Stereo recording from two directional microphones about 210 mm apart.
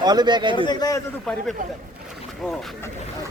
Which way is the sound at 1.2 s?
Centre (ahead or behind).